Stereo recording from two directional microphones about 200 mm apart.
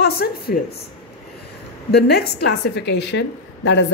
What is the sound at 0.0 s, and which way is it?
Speech, 50° left (ahead or behind).